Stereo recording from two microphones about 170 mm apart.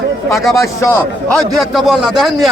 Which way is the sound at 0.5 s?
15° left (ahead or behind).